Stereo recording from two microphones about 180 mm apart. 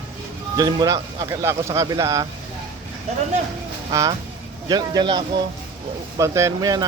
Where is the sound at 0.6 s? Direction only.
20° right (ahead or behind).